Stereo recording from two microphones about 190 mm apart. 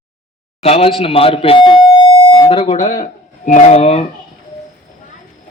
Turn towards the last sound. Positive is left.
turn(degrees=35)  # may be behind; listen again after turning